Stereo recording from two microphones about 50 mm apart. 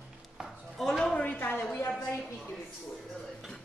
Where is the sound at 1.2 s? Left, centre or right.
Left.